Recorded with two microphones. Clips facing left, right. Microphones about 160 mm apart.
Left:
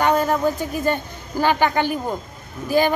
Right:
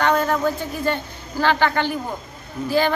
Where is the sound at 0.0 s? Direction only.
10° left (ahead or behind).